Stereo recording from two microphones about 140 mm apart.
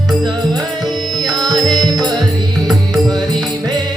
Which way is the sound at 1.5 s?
30° right (ahead or behind).